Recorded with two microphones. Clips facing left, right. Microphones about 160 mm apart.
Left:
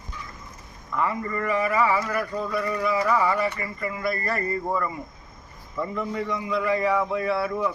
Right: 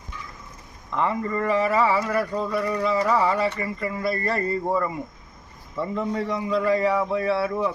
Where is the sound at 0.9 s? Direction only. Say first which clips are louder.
Right 2 dB; 25° right (ahead or behind).